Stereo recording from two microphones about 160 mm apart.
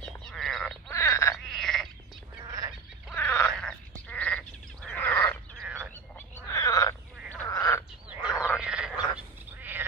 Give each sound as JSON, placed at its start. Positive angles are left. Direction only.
{"t": 0.0, "sound": "frog", "side_deg": 0}
{"t": 0.9, "sound": "frog", "side_deg": 15}
{"t": 1.3, "sound": "frog", "side_deg": 0}
{"t": 2.4, "sound": "a sound", "side_deg": -25}
{"t": 3.2, "sound": "wild animals", "side_deg": 10}
{"t": 4.1, "sound": "sheep", "side_deg": 5}
{"t": 4.9, "sound": "bird", "side_deg": 10}
{"t": 5.6, "sound": "frog", "side_deg": -10}
{"t": 6.1, "sound": "frog", "side_deg": 20}
{"t": 8.2, "sound": "frog", "side_deg": -5}